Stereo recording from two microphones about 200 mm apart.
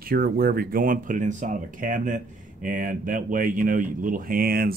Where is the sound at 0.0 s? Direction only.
50° right (ahead or behind).